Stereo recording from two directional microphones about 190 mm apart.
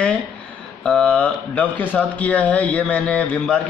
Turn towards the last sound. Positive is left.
turn(degrees=5)  # may be behind; listen again after turning